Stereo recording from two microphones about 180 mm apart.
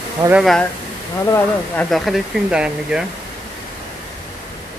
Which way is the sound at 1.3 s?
15° left (ahead or behind).